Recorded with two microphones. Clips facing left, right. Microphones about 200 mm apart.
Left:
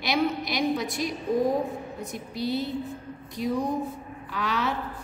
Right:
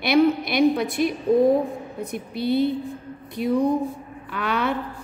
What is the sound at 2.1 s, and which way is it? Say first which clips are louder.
A woman's voice: right 6 dB; 60° right (ahead or behind).